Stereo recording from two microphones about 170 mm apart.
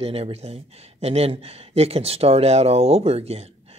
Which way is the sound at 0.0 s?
35° right (ahead or behind).